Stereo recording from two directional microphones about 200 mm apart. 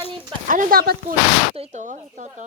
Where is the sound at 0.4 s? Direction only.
40° right (ahead or behind).